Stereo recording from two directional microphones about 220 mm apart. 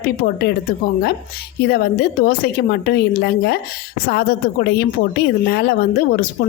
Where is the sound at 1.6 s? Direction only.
45° left (ahead or behind).